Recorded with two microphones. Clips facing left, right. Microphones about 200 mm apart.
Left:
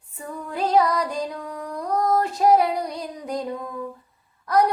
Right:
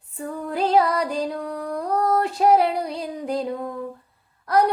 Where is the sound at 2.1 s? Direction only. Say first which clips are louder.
Even; 30° right (ahead or behind).